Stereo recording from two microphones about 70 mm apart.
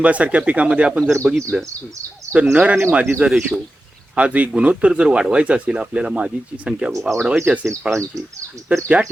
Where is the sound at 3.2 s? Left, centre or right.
Centre.